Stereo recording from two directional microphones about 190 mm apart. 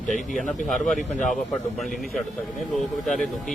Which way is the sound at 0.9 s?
40° left (ahead or behind).